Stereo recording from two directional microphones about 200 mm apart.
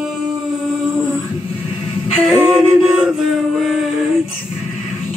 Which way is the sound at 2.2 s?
5° right (ahead or behind).